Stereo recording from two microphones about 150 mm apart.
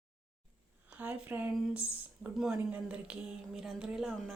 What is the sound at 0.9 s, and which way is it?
Speech, 10° right (ahead or behind).